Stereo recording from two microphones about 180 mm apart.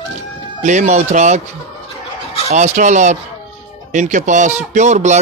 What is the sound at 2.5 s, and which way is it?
A man's voice, 40° right (ahead or behind).